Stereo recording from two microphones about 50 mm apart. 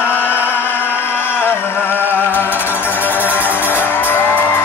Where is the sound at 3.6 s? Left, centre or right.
Left.